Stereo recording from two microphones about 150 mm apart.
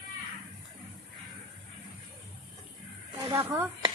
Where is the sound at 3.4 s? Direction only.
15° right (ahead or behind).